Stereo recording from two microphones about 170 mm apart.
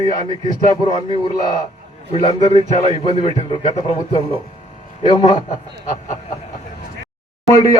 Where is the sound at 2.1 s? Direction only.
35° left (ahead or behind).